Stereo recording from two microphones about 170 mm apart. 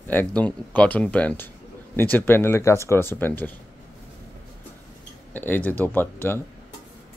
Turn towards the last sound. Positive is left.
turn(degrees=10)  # may be behind; listen again after turning